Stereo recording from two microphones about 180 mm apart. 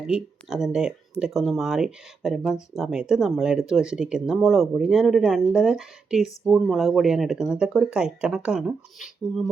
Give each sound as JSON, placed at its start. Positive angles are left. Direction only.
{"t": 0.1, "sound": "speech", "side_deg": 0}